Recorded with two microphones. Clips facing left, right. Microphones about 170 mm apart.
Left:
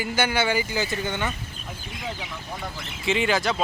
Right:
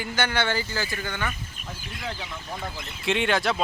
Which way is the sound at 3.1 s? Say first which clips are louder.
Left 1 dB; centre (ahead or behind).